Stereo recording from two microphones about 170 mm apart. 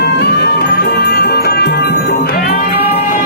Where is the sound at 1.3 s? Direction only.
70° left (ahead or behind).